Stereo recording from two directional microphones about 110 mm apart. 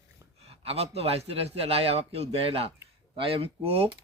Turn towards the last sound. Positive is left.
turn(degrees=-65)  # may be behind; listen again after turning